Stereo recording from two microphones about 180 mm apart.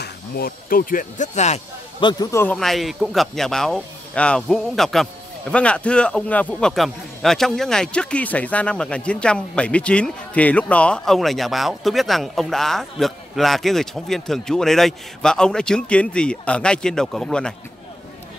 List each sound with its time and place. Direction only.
0.0 s speech: 55° left (ahead or behind); by 1.6 s 40° left (ahead or behind)
2.0 s a man's voice: 25° left (ahead or behind)
2.3 s speech: 10° left (ahead or behind)